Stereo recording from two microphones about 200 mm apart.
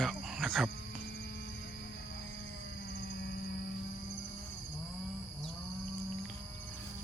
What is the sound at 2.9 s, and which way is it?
Music, 55° left (ahead or behind).